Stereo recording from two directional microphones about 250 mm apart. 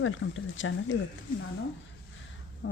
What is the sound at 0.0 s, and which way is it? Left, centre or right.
Speech, left.